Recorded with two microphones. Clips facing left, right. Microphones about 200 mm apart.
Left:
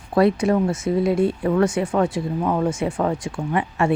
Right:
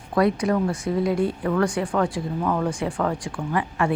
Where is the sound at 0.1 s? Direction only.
25° left (ahead or behind).